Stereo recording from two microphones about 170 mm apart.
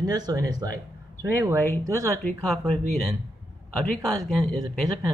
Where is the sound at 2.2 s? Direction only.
5° left (ahead or behind).